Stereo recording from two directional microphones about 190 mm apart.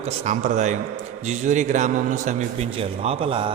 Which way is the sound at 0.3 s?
40° right (ahead or behind).